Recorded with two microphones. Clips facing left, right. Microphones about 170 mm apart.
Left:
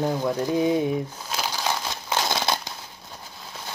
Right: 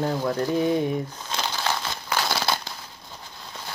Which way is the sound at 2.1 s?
20° left (ahead or behind).